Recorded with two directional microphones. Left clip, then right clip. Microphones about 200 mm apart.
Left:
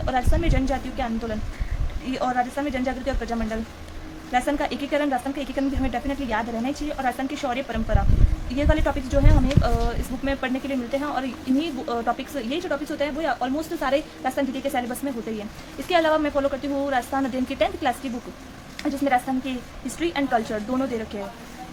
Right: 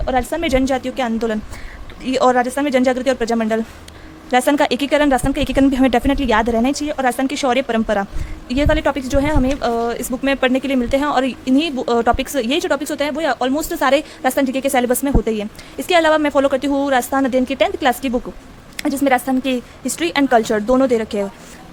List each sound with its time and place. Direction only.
0.0 s a woman's voice: 35° right (ahead or behind); by 21.2 s 55° right (ahead or behind)